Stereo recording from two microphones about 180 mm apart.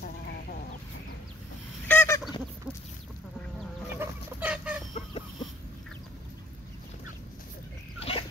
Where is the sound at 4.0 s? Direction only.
10° right (ahead or behind).